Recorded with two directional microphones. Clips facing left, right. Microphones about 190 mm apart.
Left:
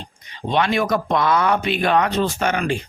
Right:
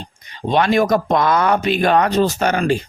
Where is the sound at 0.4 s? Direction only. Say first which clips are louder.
Right 4 dB; 40° right (ahead or behind).